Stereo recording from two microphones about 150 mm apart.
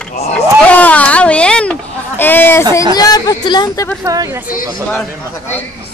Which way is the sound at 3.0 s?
25° left (ahead or behind).